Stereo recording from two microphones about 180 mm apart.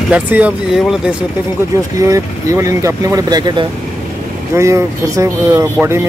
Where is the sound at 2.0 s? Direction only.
20° right (ahead or behind).